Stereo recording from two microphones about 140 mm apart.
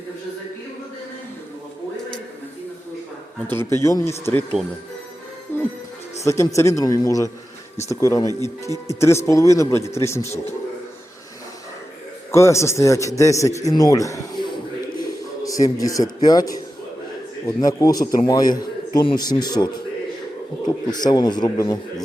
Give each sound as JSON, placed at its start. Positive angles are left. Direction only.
{"t": 3.4, "sound": "a man's voice", "side_deg": 15}
{"t": 5.5, "sound": "music", "side_deg": 15}
{"t": 6.2, "sound": "a man's voice", "side_deg": 20}
{"t": 12.3, "sound": "a man's voice", "side_deg": 20}